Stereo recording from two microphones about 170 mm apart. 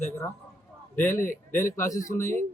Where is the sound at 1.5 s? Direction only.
15° left (ahead or behind).